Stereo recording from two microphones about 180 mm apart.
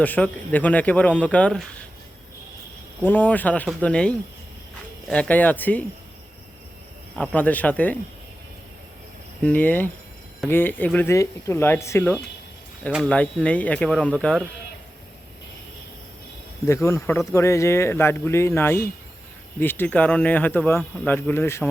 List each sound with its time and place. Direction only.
0.0 s speech: 10° left (ahead or behind)
3.0 s speech: 10° left (ahead or behind)
7.2 s speech: 10° left (ahead or behind)
9.4 s speech: 10° left (ahead or behind)
16.6 s speech: 15° left (ahead or behind)